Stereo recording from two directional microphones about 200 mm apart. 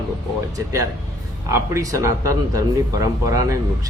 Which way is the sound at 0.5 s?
15° right (ahead or behind).